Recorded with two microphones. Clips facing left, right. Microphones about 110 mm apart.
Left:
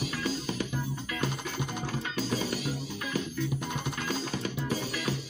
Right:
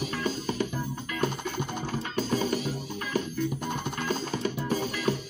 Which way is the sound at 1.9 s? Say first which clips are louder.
Right 3 dB; 50° right (ahead or behind).